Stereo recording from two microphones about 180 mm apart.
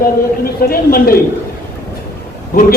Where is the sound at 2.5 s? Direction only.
55° left (ahead or behind).